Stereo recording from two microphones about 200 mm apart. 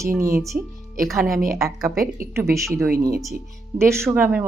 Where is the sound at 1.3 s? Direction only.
45° right (ahead or behind).